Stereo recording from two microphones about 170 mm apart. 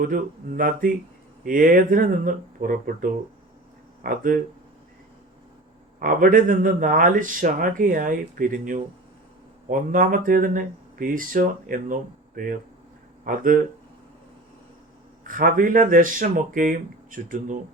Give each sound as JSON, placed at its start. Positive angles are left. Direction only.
{"t": 0.1, "sound": "speech", "side_deg": -55}
{"t": 6.0, "sound": "speech", "side_deg": -55}
{"t": 15.3, "sound": "speech", "side_deg": -55}